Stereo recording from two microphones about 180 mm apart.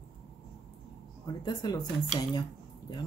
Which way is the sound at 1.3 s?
25° left (ahead or behind).